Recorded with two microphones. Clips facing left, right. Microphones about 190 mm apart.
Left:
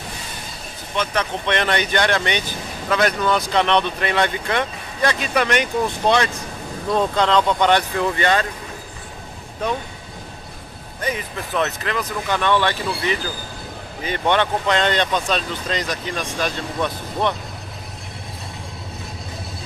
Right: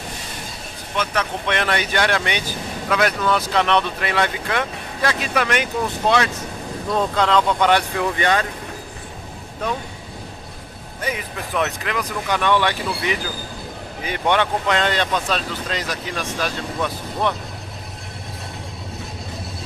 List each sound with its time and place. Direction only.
0.9 s speech: 5° right (ahead or behind)
11.0 s speech: 10° right (ahead or behind)
14.0 s speech: 10° right (ahead or behind)